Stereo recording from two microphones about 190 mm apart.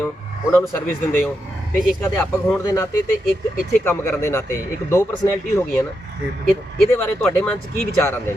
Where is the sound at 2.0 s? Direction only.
15° left (ahead or behind).